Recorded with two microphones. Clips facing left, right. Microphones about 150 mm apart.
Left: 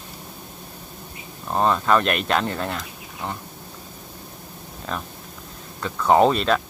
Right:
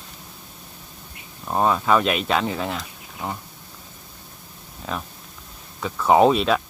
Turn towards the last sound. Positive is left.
turn(degrees=-5)  # may be behind; listen again after turning